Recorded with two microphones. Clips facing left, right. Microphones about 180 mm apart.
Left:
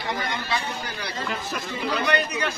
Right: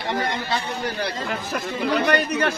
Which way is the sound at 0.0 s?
30° right (ahead or behind).